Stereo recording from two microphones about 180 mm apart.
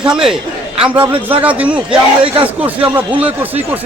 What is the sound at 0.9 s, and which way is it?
Speech, 30° right (ahead or behind).